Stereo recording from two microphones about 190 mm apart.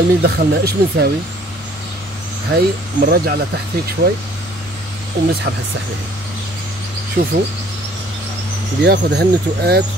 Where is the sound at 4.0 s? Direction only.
50° right (ahead or behind).